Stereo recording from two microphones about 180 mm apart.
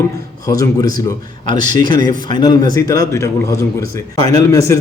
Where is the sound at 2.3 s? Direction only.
25° left (ahead or behind).